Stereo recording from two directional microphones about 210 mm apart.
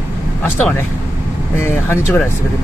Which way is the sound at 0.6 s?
10° left (ahead or behind).